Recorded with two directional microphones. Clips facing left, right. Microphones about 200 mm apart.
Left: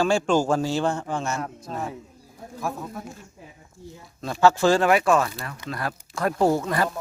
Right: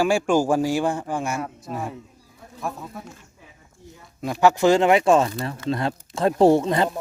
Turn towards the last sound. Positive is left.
turn(degrees=-25)  # may be behind; listen again after turning